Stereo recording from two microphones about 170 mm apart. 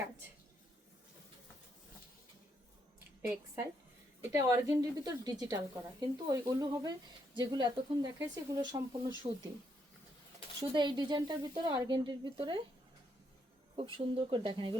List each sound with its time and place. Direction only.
3.2 s a woman's voice: 15° right (ahead or behind)
10.6 s a woman's voice: 25° right (ahead or behind)
13.7 s speech: 30° right (ahead or behind)